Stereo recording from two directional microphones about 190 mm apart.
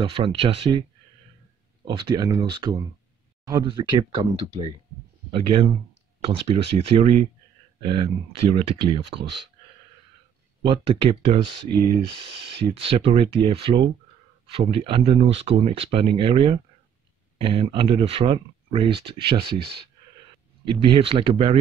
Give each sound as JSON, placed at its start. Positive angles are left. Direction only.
{"t": 0.0, "sound": "speech", "side_deg": -30}
{"t": 1.9, "sound": "speech", "side_deg": -25}
{"t": 10.6, "sound": "speech", "side_deg": -25}